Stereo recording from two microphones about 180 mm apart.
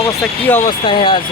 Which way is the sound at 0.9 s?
30° left (ahead or behind).